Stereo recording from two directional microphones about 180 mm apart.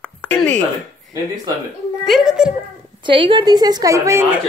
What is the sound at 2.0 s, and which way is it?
Speech, centre (ahead or behind).